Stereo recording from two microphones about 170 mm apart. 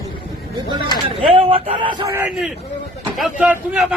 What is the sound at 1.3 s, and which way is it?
Speech, 35° right (ahead or behind).